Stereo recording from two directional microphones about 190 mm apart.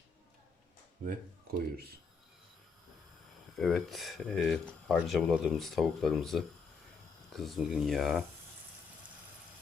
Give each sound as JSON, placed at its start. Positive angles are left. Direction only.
{"t": 1.0, "sound": "speech", "side_deg": -40}
{"t": 3.5, "sound": "speech", "side_deg": 0}